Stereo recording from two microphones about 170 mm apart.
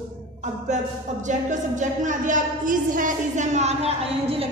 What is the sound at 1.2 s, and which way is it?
A woman's voice, 45° right (ahead or behind).